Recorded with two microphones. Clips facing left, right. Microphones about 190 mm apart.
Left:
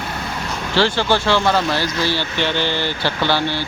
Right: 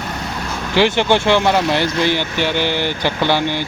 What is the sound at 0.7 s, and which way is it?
Speech, 15° right (ahead or behind).